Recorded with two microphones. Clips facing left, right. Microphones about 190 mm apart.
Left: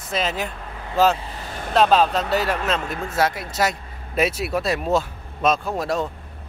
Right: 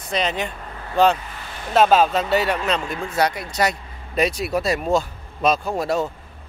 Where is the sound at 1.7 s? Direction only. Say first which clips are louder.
Right 1 dB; 5° right (ahead or behind).